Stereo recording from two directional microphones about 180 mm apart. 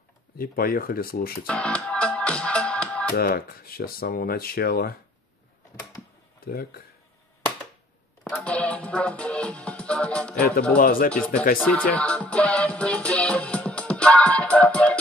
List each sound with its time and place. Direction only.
0.4 s speech: 55° left (ahead or behind)
1.5 s music: 5° left (ahead or behind)
3.2 s speech: 55° left (ahead or behind)
6.4 s speech: 55° left (ahead or behind)
8.2 s music: 5° left (ahead or behind)
10.8 s speech: 50° left (ahead or behind)
11.1 s speech: 5° left (ahead or behind)
12.0 s music: 5° left (ahead or behind)